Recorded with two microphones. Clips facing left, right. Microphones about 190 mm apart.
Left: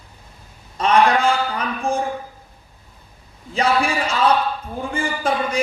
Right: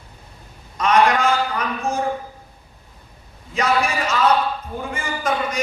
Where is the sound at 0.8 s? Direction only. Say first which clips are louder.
Left 1 dB; 30° left (ahead or behind).